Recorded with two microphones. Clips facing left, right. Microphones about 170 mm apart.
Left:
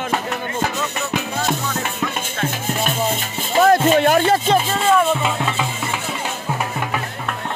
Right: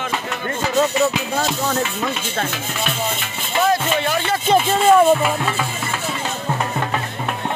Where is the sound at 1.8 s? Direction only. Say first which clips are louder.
Right 2 dB; 50° left (ahead or behind).